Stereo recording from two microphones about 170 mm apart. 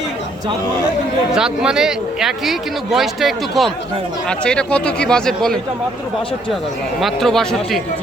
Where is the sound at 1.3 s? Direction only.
5° right (ahead or behind).